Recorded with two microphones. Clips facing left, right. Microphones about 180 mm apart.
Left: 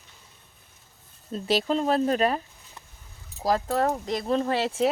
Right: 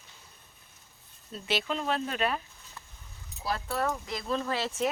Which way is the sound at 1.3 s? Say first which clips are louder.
Left 7 dB; 40° left (ahead or behind).